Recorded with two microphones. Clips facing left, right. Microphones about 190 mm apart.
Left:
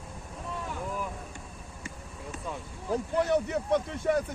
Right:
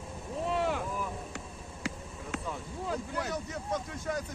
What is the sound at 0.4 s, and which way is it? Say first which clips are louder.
Boat: right 8 dB; 80° right.